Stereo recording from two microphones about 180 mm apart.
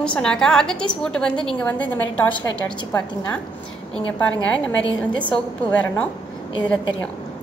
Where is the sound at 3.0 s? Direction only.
5° left (ahead or behind).